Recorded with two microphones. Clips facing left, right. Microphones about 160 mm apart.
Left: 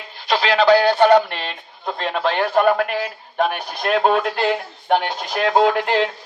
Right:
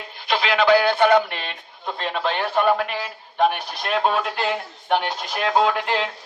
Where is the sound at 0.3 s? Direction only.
35° left (ahead or behind).